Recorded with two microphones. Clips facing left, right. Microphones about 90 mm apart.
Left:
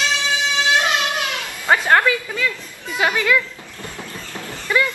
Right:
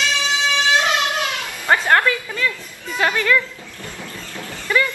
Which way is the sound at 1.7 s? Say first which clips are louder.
Left 1 dB; 15° left (ahead or behind).